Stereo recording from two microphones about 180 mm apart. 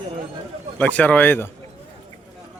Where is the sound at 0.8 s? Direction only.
10° left (ahead or behind).